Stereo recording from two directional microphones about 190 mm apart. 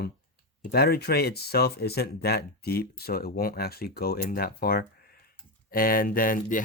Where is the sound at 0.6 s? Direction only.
55° left (ahead or behind).